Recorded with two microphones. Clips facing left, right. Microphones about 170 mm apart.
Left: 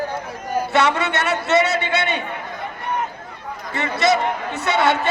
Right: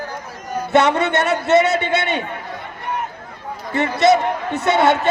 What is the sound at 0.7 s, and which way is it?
A man's voice, 50° right (ahead or behind).